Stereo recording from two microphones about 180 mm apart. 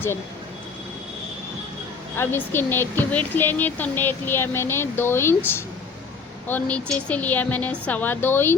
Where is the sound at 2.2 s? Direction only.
10° left (ahead or behind).